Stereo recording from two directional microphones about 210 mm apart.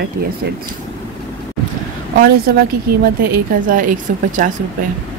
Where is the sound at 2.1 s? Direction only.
45° right (ahead or behind).